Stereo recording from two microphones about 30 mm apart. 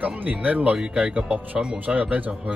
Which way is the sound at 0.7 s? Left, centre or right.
Right.